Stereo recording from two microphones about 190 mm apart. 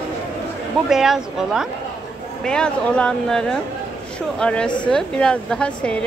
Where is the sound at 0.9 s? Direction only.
Centre (ahead or behind).